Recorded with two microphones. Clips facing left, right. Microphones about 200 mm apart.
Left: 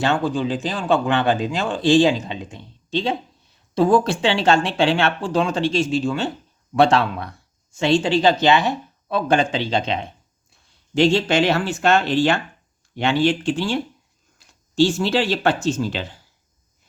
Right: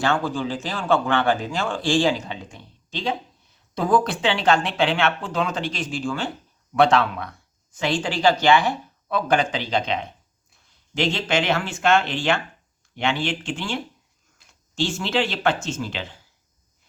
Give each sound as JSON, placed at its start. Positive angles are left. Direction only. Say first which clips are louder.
{"t": 0.0, "sound": "speech", "louder": "left 3 dB", "side_deg": 20}